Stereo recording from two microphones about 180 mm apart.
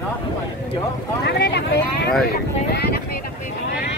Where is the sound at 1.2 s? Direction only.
70° left (ahead or behind).